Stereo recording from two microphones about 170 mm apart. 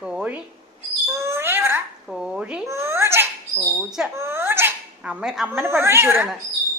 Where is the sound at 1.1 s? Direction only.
15° right (ahead or behind).